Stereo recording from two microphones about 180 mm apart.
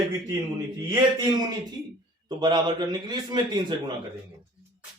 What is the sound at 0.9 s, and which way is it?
A man's voice, 20° right (ahead or behind).